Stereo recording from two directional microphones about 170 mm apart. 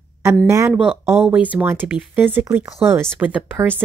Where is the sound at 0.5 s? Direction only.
15° right (ahead or behind).